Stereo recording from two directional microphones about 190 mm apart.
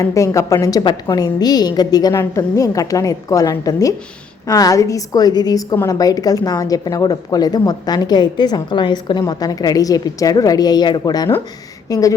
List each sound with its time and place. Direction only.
0.0 s a woman's voice: 15° left (ahead or behind)